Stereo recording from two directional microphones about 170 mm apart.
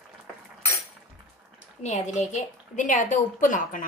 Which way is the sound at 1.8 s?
45° left (ahead or behind).